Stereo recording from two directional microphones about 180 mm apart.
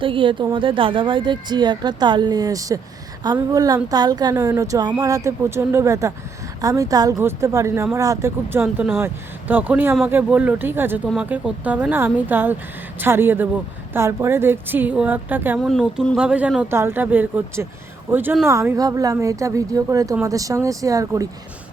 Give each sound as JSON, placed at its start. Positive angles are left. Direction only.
{"t": 0.0, "sound": "a woman's voice", "side_deg": -30}
{"t": 15.6, "sound": "a woman's voice", "side_deg": 0}